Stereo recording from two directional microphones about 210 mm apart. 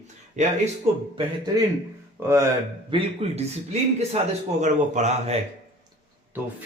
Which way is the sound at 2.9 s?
30° right (ahead or behind).